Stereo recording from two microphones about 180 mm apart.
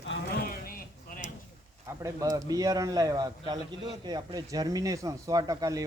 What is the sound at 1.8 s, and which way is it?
A man's voice, 20° right (ahead or behind).